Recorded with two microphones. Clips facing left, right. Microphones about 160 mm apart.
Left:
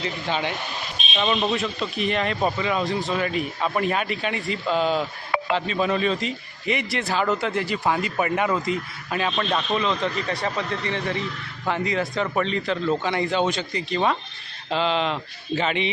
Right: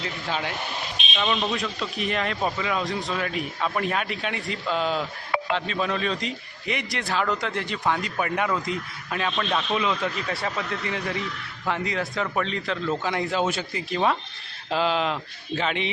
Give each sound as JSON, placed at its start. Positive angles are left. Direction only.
{"t": 0.0, "sound": "speech", "side_deg": 0}
{"t": 9.7, "sound": "speech", "side_deg": -5}